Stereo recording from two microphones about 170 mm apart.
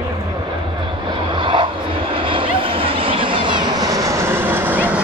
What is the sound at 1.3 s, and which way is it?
Vehicle, 30° right (ahead or behind).